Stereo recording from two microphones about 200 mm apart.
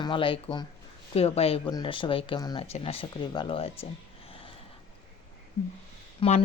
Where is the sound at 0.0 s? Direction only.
25° left (ahead or behind).